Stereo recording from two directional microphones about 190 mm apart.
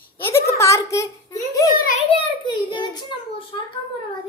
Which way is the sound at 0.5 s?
15° left (ahead or behind).